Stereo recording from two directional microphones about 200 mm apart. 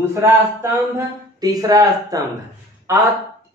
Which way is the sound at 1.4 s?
20° right (ahead or behind).